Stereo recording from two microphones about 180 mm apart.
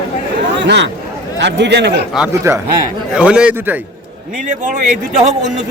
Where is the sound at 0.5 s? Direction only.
80° right.